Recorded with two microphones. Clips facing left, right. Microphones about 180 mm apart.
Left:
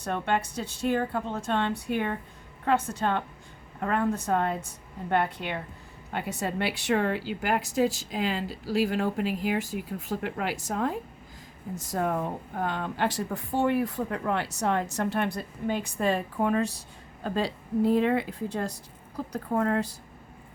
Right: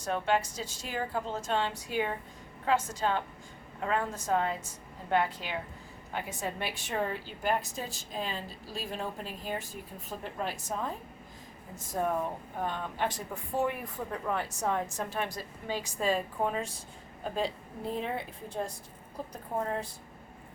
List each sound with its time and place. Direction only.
0.0 s a woman's voice: 60° left (ahead or behind)
17.3 s speech: 85° left